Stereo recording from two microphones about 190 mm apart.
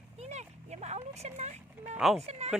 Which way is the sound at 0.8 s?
35° right (ahead or behind).